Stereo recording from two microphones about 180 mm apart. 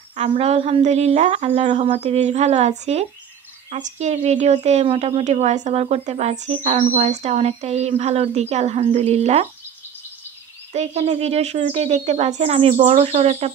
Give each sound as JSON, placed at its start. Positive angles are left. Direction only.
{"t": 0.1, "sound": "a woman's voice", "side_deg": -35}
{"t": 10.7, "sound": "a woman's voice", "side_deg": -40}